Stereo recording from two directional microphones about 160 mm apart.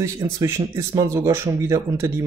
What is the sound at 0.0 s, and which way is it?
Speech, 20° right (ahead or behind).